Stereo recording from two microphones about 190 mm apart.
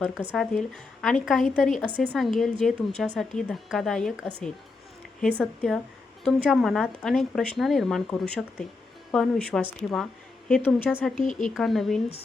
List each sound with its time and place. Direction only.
0.0 s a woman's voice: 5° right (ahead or behind)
5.4 s a woman's voice: centre (ahead or behind)
11.2 s speech: 40° left (ahead or behind)
11.4 s a woman's voice: centre (ahead or behind)